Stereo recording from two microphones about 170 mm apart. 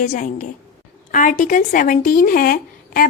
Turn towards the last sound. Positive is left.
turn(degrees=60)  # may be behind; listen again after turning